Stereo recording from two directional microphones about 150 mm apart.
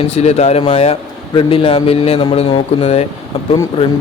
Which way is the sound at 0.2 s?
45° left (ahead or behind).